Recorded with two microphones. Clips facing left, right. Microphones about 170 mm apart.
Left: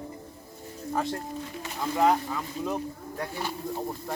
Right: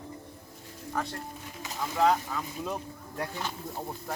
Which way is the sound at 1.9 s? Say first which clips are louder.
Left 2 dB; 10° left (ahead or behind).